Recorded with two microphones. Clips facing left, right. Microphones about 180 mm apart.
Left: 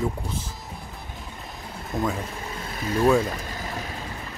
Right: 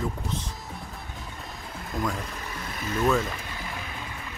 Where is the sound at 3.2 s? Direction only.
40° left (ahead or behind).